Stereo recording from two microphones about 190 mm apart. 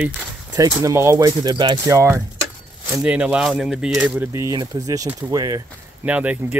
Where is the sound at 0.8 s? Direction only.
15° right (ahead or behind).